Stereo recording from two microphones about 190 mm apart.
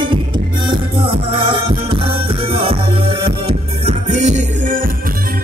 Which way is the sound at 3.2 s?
30° right (ahead or behind).